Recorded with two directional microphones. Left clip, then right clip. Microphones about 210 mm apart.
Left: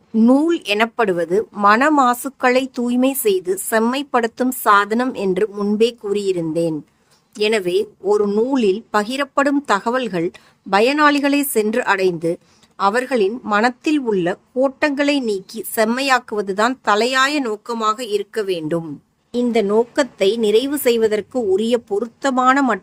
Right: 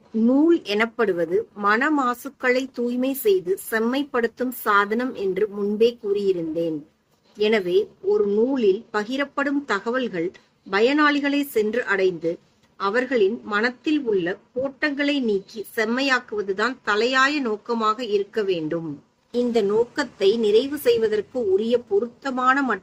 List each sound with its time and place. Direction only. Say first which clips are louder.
0.2 s speech: left 3 dB; 45° left (ahead or behind)